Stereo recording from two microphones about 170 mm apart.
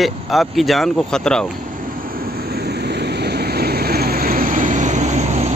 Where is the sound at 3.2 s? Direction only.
70° right (ahead or behind).